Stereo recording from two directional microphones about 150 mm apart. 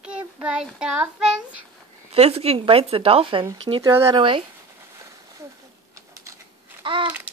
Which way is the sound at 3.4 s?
25° right (ahead or behind).